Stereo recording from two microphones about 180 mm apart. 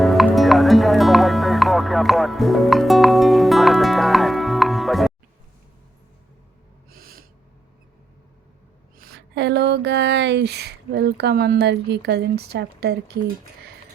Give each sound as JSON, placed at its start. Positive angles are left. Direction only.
{"t": 0.0, "sound": "music", "side_deg": 0}
{"t": 6.9, "sound": "owl", "side_deg": -55}
{"t": 9.0, "sound": "a sound", "side_deg": -65}